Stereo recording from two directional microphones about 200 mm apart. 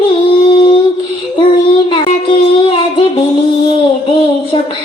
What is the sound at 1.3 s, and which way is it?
Child singing, 25° left (ahead or behind).